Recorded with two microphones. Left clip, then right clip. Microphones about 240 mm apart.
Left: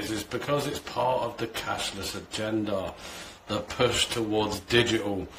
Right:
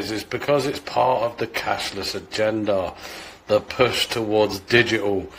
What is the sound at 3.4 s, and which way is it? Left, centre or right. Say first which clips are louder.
A man's voice: right 8 dB; centre.